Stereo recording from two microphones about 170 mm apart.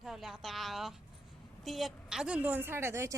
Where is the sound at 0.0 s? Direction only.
Centre (ahead or behind).